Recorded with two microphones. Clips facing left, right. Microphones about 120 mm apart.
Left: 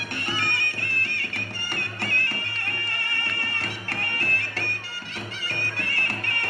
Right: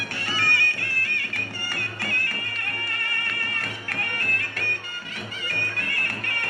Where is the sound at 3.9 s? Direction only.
30° left (ahead or behind).